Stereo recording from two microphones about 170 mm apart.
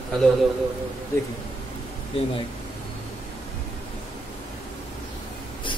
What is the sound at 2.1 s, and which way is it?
Speech, 35° left (ahead or behind).